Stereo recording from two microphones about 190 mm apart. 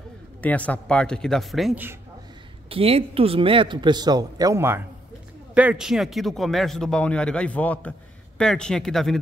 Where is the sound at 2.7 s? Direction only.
30° right (ahead or behind).